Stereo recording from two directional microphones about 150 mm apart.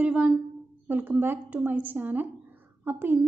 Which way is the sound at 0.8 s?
10° right (ahead or behind).